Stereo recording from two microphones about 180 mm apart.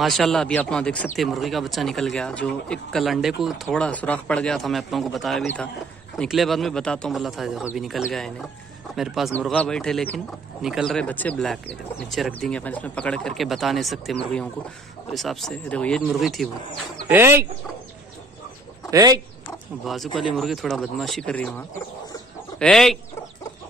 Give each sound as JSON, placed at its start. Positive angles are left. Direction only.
{"t": 0.0, "sound": "speech", "side_deg": 0}
{"t": 17.1, "sound": "speech", "side_deg": -15}
{"t": 18.9, "sound": "speech", "side_deg": -20}
{"t": 19.8, "sound": "speech", "side_deg": 0}